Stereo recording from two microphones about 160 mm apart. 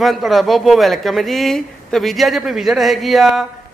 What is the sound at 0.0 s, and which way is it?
Speech, centre (ahead or behind).